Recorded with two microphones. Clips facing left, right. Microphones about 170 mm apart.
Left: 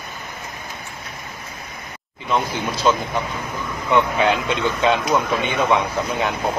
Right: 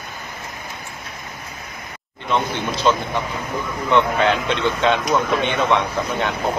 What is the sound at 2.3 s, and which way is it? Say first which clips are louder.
Speech: even; 5° left (ahead or behind).